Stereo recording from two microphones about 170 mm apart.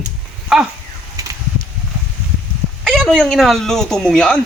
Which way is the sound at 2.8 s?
5° left (ahead or behind).